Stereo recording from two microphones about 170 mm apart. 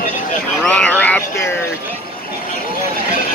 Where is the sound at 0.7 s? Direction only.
10° left (ahead or behind).